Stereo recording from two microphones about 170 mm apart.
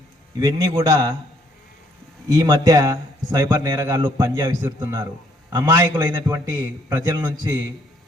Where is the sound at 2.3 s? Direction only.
20° right (ahead or behind).